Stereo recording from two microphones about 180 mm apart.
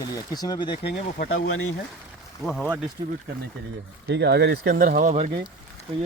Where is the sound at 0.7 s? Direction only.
65° left (ahead or behind).